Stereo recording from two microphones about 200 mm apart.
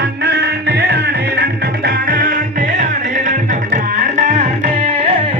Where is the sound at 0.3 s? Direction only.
55° right (ahead or behind).